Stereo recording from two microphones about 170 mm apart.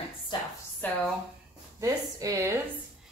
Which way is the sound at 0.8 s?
10° left (ahead or behind).